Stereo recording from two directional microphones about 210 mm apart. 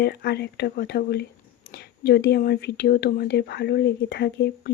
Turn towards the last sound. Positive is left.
turn(degrees=50)  # may be behind; listen again after turning